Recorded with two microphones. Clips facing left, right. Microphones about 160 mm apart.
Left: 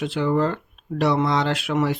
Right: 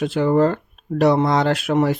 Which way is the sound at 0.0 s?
45° right (ahead or behind).